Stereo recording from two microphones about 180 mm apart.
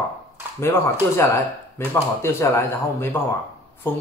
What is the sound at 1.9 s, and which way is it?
Speech, 15° left (ahead or behind).